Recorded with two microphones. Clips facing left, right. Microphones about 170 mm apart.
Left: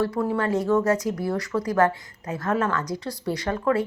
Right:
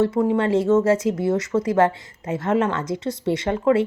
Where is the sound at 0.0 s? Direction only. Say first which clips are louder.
Right 5 dB; 20° right (ahead or behind).